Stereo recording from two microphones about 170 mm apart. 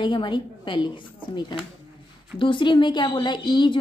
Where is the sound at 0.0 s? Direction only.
30° left (ahead or behind).